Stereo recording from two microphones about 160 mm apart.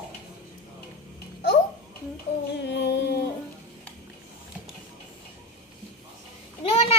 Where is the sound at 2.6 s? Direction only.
90° left.